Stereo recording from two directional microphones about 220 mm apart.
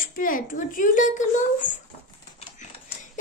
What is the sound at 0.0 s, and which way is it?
A child's voice, 40° left (ahead or behind).